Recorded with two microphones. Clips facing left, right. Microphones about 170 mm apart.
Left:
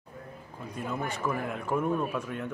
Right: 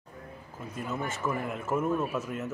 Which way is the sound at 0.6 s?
5° right (ahead or behind).